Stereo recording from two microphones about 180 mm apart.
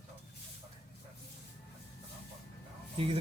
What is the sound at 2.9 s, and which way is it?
Speech, 30° right (ahead or behind).